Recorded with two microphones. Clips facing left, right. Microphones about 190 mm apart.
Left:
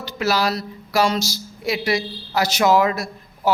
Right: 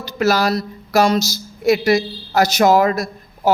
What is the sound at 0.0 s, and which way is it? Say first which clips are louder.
Speech: right 4 dB; 45° right (ahead or behind).